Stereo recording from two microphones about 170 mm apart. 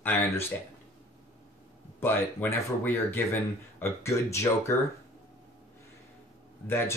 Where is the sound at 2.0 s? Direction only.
10° left (ahead or behind).